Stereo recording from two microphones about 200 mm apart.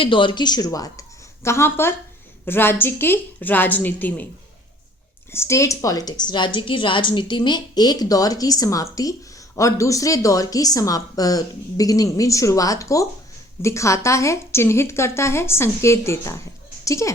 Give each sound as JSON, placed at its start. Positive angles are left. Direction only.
{"t": 0.0, "sound": "speech", "side_deg": 25}
{"t": 5.3, "sound": "a woman's voice", "side_deg": 15}